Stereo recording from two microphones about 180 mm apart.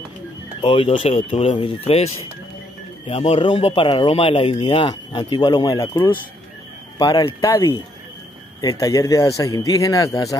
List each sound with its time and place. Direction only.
0.6 s speech: 30° left (ahead or behind)